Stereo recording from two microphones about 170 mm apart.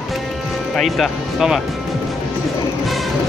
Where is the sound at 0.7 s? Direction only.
Centre (ahead or behind).